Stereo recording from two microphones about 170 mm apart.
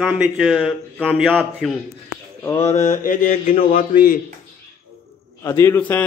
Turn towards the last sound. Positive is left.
turn(degrees=10)  # may be behind; listen again after turning